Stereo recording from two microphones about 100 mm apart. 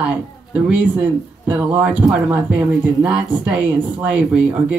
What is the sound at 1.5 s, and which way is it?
Speech, 15° right (ahead or behind).